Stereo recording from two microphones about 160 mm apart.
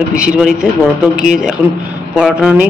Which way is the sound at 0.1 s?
5° right (ahead or behind).